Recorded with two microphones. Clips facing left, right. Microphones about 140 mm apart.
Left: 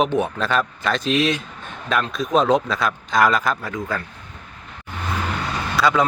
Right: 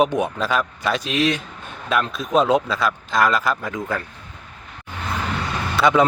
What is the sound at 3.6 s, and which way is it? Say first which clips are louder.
Speech: right 1 dB; 20° right (ahead or behind).